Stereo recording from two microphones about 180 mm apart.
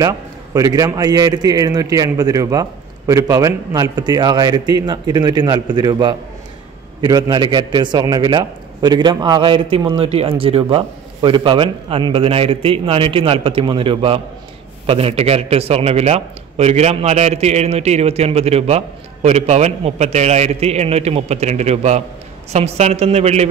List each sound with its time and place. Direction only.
0.0 s a man's voice: 20° right (ahead or behind); by 23.4 s 35° right (ahead or behind)